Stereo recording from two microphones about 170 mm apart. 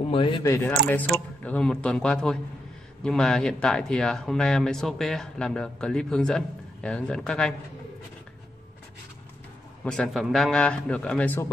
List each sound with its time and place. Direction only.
0.0 s speech: 30° left (ahead or behind)
0.4 s speech: 15° left (ahead or behind)
9.8 s speech: centre (ahead or behind)